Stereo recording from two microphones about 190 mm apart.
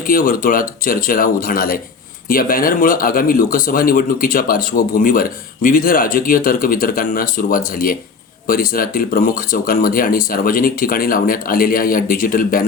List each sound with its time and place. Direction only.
0.1 s speech: 50° left (ahead or behind)